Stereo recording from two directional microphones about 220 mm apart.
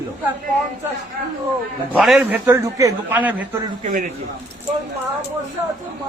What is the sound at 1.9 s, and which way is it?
A man's voice, centre (ahead or behind).